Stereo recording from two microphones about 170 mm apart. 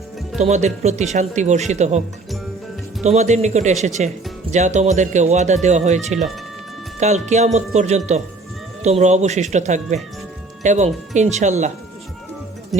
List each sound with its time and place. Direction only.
0.3 s speech: 40° right (ahead or behind)